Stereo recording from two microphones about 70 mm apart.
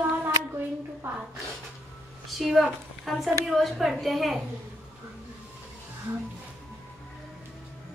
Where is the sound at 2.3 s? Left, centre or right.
Centre.